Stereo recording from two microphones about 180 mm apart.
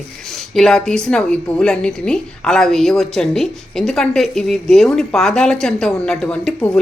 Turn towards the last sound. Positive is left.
turn(degrees=5)  # may be behind; listen again after turning